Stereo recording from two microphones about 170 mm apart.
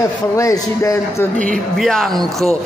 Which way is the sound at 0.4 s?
20° left (ahead or behind).